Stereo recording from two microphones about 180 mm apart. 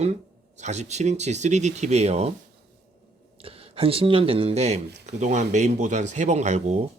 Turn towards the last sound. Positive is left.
turn(degrees=-40)  # may be behind; listen again after turning